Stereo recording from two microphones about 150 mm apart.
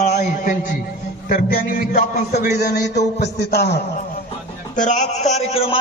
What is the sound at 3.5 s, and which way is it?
Speech, 90° left.